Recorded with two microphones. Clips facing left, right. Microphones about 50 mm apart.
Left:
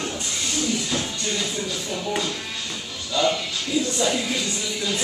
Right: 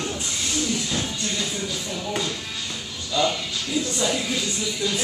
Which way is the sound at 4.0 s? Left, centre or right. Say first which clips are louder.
Even; centre.